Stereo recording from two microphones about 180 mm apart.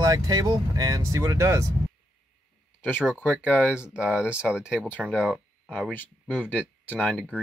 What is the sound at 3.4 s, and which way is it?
Speech, 5° right (ahead or behind).